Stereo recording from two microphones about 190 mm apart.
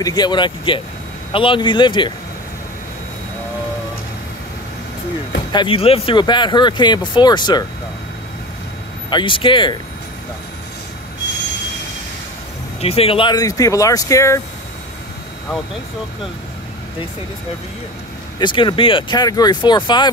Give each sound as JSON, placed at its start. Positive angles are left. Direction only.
{"t": 0.0, "sound": "speech", "side_deg": 20}
{"t": 5.5, "sound": "speech", "side_deg": 25}
{"t": 9.1, "sound": "speech", "side_deg": 25}
{"t": 12.8, "sound": "speech", "side_deg": 30}
{"t": 18.4, "sound": "speech", "side_deg": 25}